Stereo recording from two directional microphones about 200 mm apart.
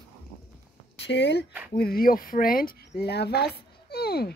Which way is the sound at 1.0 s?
60° left (ahead or behind).